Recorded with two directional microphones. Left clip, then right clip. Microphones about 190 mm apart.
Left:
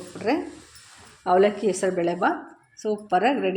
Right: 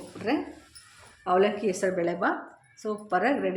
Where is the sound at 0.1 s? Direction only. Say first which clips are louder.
Left 5 dB; 25° left (ahead or behind).